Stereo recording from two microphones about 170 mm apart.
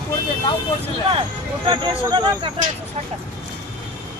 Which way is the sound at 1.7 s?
25° right (ahead or behind).